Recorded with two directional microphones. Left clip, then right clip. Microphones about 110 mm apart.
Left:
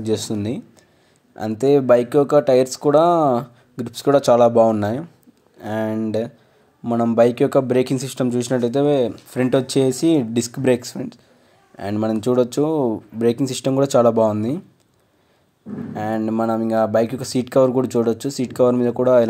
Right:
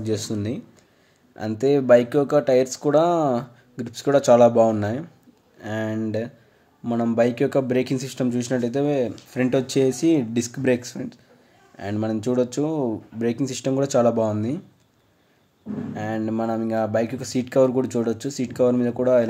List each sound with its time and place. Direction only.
0.0 s speech: 30° left (ahead or behind)
15.9 s speech: 40° left (ahead or behind)